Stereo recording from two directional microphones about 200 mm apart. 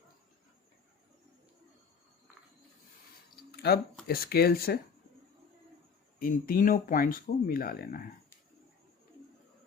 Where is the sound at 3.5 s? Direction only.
55° left (ahead or behind).